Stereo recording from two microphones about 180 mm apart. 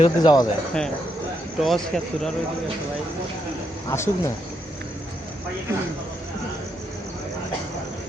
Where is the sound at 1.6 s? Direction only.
Centre (ahead or behind).